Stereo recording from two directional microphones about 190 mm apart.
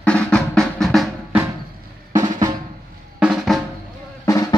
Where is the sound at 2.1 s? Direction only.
20° right (ahead or behind).